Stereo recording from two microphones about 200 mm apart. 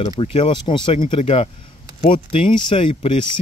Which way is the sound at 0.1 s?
30° left (ahead or behind).